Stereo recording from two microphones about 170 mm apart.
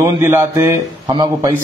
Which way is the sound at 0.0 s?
15° right (ahead or behind).